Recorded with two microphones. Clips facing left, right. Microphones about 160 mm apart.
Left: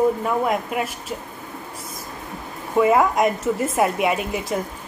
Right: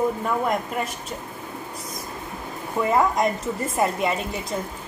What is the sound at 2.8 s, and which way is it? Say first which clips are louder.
A woman's voice: left 4 dB; 10° left (ahead or behind).